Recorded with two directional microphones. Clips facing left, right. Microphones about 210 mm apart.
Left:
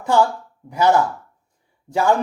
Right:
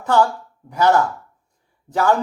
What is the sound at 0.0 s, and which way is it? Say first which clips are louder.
Speech: even; 10° left (ahead or behind).